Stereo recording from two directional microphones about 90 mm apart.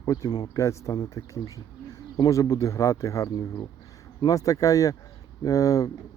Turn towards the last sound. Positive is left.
turn(degrees=40)  # may be behind; listen again after turning